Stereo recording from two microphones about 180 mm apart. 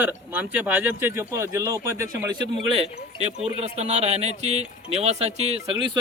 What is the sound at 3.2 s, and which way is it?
Speech, 35° right (ahead or behind).